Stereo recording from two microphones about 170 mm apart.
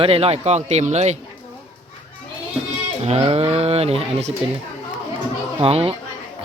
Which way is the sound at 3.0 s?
35° right (ahead or behind).